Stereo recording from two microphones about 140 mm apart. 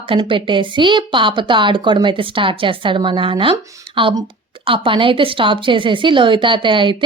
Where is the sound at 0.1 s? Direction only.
35° right (ahead or behind).